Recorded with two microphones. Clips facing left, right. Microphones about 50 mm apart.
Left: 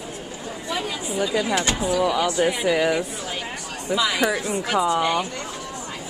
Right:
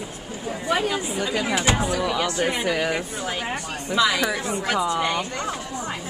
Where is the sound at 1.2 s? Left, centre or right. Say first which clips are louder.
Left 5 dB; right.